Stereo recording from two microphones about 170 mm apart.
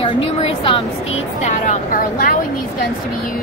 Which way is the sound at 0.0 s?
35° left (ahead or behind).